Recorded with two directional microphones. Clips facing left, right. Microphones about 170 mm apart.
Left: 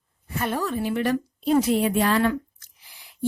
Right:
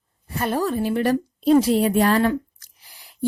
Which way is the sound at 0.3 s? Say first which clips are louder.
Right 4 dB; 35° right (ahead or behind).